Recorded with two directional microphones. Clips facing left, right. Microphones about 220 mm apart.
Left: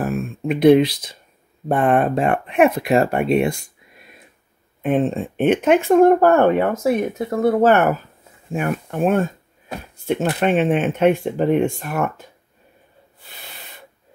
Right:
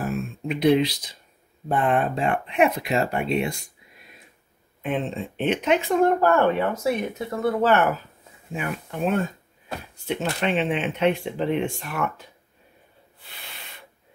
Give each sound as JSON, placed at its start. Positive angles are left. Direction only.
{"t": 0.0, "sound": "a sound", "side_deg": 55}
{"t": 1.7, "sound": "speech", "side_deg": 50}
{"t": 4.8, "sound": "speech", "side_deg": 50}